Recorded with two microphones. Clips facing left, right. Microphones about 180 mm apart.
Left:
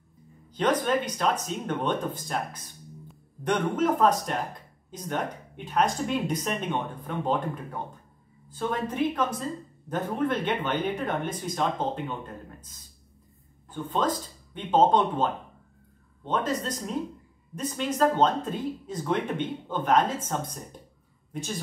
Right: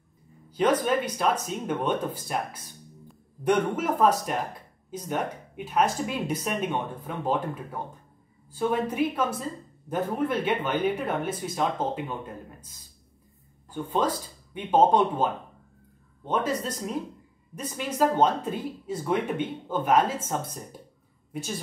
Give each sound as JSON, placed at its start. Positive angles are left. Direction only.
{"t": 0.5, "sound": "speech", "side_deg": -10}
{"t": 8.5, "sound": "speech", "side_deg": -10}
{"t": 13.7, "sound": "speech", "side_deg": -10}
{"t": 16.3, "sound": "a woman's voice", "side_deg": -10}